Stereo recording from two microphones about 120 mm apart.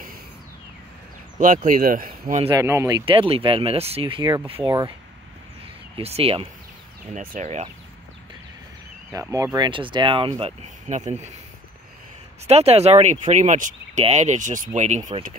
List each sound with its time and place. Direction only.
1.4 s speech: 90° right
2.5 s speech: 25° right (ahead or behind)
3.1 s speech: 50° right (ahead or behind)
5.9 s speech: 55° right (ahead or behind)
7.2 s speech: 80° right
9.1 s speech: 25° right (ahead or behind)
9.7 s speech: 45° right (ahead or behind)
10.6 s speech: 75° right (ahead or behind)
12.4 s speech: 60° right (ahead or behind)
13.3 s speech: 85° right